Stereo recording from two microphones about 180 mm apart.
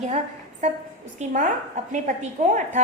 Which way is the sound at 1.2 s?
40° right (ahead or behind).